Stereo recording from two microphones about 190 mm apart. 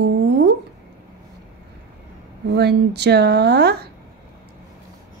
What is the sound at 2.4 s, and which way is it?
Speech, 60° right (ahead or behind).